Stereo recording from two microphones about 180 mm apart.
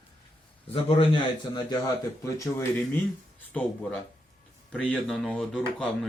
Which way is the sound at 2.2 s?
15° left (ahead or behind).